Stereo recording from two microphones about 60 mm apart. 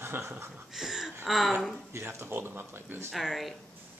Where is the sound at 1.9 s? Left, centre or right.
Right.